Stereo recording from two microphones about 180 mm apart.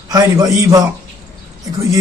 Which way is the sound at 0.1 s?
20° right (ahead or behind).